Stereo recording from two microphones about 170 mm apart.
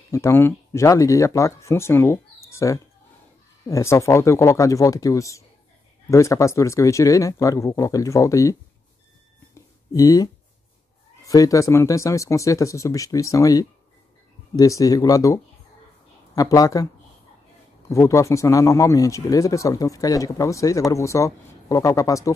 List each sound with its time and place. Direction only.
0.1 s speech: 15° left (ahead or behind)
9.5 s a sound: 20° left (ahead or behind)
11.2 s speech: 20° left (ahead or behind)